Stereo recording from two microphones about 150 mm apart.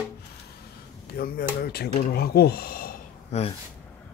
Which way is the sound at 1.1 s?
80° left.